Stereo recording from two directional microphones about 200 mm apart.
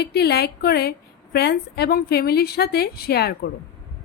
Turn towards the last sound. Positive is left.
turn(degrees=50)  # may be behind; listen again after turning